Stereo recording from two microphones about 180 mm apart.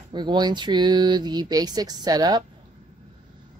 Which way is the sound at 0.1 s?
25° right (ahead or behind).